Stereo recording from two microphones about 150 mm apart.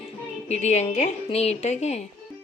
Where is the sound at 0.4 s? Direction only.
45° left (ahead or behind).